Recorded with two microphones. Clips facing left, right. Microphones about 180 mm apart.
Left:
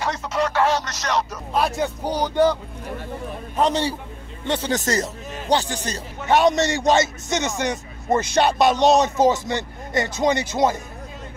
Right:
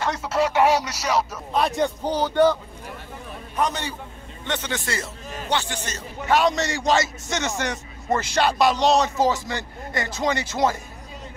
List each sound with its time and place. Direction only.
0.1 s speech: 5° right (ahead or behind); by 2.5 s 15° left (ahead or behind)
3.5 s a man's voice: 30° left (ahead or behind)
6.2 s a man's voice: 20° left (ahead or behind)